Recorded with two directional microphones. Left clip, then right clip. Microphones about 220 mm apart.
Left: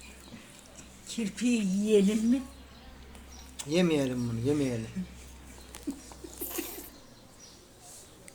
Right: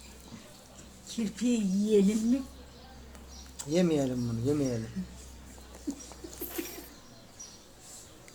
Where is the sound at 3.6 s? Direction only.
5° left (ahead or behind).